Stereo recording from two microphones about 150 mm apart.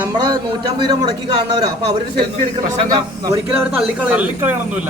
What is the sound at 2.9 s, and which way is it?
Speech, 25° right (ahead or behind).